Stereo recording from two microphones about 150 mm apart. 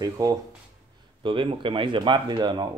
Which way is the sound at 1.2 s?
35° right (ahead or behind).